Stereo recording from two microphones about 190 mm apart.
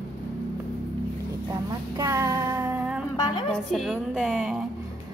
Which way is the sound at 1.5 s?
15° right (ahead or behind).